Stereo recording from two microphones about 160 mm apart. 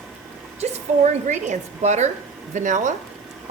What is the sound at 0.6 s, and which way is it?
A woman's voice, 45° right (ahead or behind).